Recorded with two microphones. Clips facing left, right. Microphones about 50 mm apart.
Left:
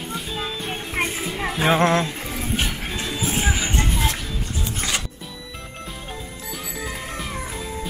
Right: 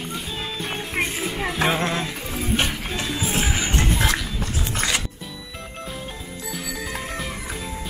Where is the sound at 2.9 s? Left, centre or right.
Centre.